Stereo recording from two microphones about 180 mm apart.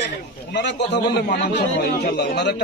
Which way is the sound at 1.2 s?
70° left (ahead or behind).